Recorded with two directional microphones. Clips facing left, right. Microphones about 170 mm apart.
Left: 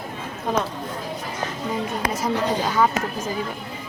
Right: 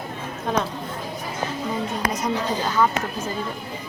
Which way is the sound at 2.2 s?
10° left (ahead or behind).